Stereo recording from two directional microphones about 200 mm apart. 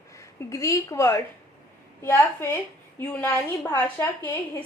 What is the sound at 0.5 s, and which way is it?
A woman's voice, 15° left (ahead or behind).